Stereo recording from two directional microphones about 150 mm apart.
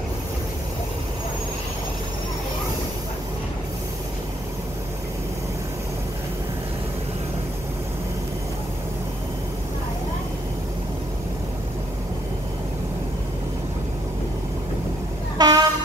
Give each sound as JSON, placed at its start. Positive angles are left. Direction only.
{"t": 15.3, "sound": "train", "side_deg": -25}